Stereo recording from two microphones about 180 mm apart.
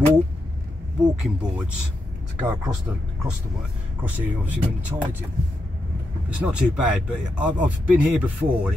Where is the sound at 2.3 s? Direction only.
20° right (ahead or behind).